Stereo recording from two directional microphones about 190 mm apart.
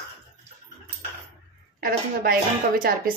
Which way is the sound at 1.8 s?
50° right (ahead or behind).